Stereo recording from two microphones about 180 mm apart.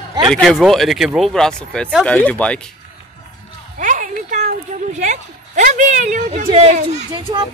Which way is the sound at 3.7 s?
45° right (ahead or behind).